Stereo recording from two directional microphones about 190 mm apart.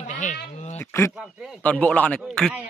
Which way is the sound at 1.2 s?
5° left (ahead or behind).